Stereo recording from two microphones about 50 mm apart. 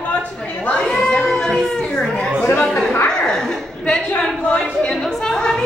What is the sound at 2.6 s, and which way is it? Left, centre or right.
Speech, centre.